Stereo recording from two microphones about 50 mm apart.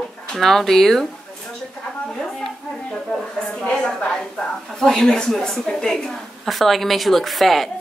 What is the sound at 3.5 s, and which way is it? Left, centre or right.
A woman's voice, centre.